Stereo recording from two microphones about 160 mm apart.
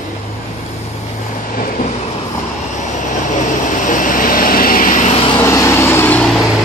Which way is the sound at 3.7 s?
55° left (ahead or behind).